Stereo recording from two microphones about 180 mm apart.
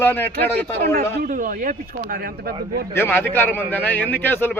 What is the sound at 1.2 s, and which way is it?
Speech, 45° right (ahead or behind).